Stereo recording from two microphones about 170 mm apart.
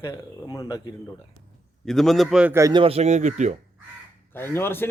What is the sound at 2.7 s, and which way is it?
Speech, 35° right (ahead or behind).